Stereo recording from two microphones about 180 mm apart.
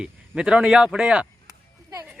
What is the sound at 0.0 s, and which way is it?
Speech, 5° right (ahead or behind).